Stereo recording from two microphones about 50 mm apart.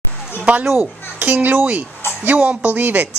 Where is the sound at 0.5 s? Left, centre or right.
Right.